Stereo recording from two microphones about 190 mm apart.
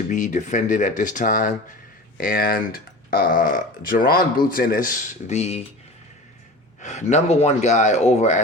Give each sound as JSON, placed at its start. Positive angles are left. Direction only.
{"t": 0.1, "sound": "speech", "side_deg": 40}
{"t": 6.8, "sound": "speech", "side_deg": 35}